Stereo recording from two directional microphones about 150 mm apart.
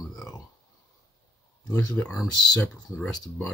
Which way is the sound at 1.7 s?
15° left (ahead or behind).